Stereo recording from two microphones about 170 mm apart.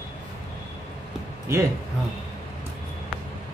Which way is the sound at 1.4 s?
15° right (ahead or behind).